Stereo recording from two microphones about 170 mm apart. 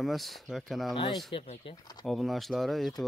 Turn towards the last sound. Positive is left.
turn(degrees=0)  # may be behind; listen again after turning